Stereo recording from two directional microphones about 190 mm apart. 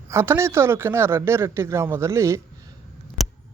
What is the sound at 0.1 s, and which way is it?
Speech, 15° right (ahead or behind).